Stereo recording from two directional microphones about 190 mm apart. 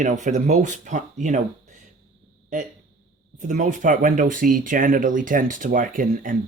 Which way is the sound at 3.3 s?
40° right (ahead or behind).